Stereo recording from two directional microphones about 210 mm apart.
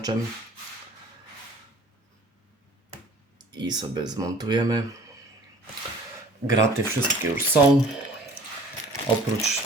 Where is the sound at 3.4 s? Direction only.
20° right (ahead or behind).